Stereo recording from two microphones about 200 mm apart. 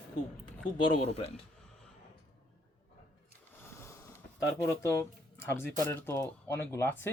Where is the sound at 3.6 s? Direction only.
15° left (ahead or behind).